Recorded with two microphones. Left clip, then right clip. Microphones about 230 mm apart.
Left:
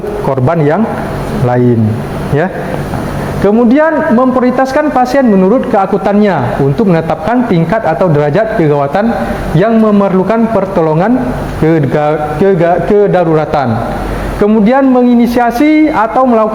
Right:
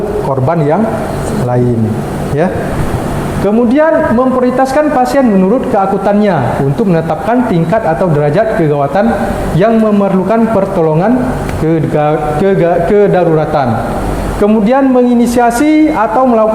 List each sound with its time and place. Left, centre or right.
0.4 s speech: left
3.4 s a woman's voice: left